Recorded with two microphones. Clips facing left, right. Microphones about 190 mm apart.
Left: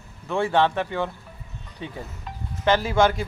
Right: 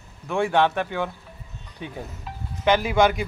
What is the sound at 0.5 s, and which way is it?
Speech, 10° right (ahead or behind).